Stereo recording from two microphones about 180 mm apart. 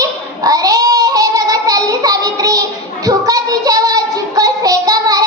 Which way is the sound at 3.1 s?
20° right (ahead or behind).